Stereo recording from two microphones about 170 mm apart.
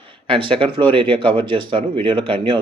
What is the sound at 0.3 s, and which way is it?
Speech, 30° right (ahead or behind).